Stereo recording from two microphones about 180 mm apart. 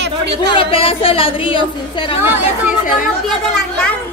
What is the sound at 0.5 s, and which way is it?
A man's voice, 30° left (ahead or behind).